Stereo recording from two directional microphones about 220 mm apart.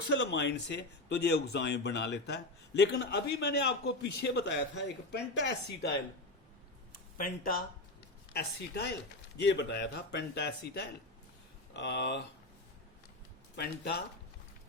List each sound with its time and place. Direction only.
0.1 s speech: 50° left (ahead or behind)
7.2 s speech: 40° left (ahead or behind)